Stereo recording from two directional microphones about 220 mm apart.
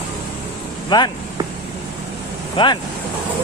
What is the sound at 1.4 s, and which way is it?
Vehicle, 20° right (ahead or behind).